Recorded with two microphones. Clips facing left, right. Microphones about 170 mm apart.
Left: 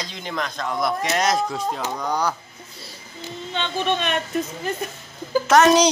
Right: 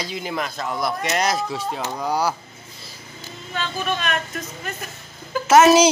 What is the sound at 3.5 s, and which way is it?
Speech, 25° left (ahead or behind).